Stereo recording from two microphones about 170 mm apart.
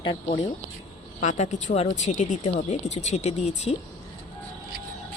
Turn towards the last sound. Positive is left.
turn(degrees=40)  # may be behind; listen again after turning